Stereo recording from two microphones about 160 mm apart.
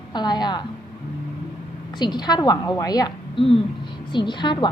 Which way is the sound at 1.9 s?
25° left (ahead or behind).